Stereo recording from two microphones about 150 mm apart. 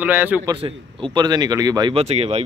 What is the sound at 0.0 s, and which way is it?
Speech, 10° right (ahead or behind).